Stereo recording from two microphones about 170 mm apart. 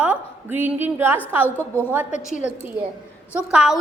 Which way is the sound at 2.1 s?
45° left (ahead or behind).